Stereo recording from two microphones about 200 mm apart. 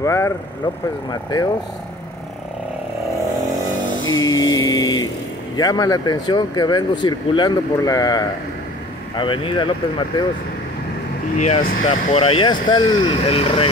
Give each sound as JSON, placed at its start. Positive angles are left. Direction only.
{"t": 0.0, "sound": "speech", "side_deg": 15}
{"t": 4.1, "sound": "mantra", "side_deg": 20}
{"t": 5.6, "sound": "speech", "side_deg": 20}
{"t": 11.3, "sound": "speech", "side_deg": 35}